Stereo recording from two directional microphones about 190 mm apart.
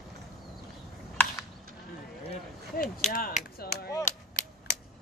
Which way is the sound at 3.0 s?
45° left (ahead or behind).